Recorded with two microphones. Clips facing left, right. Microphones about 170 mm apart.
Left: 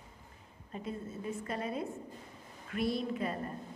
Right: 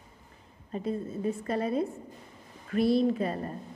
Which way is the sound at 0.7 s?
35° right (ahead or behind).